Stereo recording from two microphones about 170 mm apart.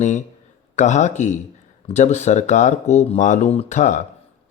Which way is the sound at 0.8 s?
45° left (ahead or behind).